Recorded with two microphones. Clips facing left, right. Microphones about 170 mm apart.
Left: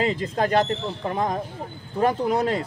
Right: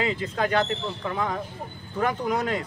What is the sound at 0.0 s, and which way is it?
Speech, 35° left (ahead or behind).